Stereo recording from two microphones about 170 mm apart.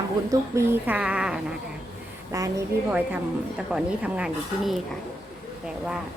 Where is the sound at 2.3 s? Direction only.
15° right (ahead or behind).